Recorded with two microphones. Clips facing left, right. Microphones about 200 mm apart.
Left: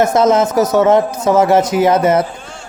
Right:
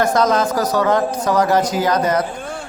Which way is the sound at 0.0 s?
25° left (ahead or behind).